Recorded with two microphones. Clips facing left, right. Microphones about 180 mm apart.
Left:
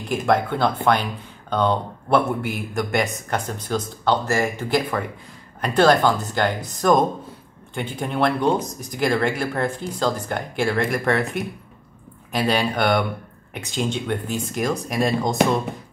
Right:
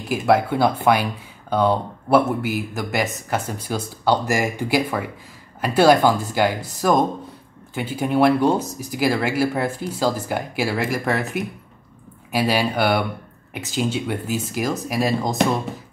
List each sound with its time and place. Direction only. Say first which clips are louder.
0.1 s speech: right 2 dB; 5° right (ahead or behind)